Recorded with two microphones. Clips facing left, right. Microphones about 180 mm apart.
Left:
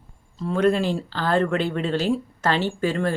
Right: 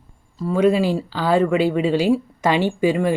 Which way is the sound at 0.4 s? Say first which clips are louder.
Right 3 dB; 5° right (ahead or behind).